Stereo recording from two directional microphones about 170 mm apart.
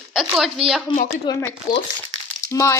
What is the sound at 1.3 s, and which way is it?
Speech, 25° left (ahead or behind).